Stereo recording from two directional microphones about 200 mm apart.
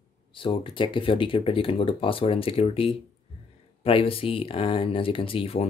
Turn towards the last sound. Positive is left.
turn(degrees=30)  # may be behind; listen again after turning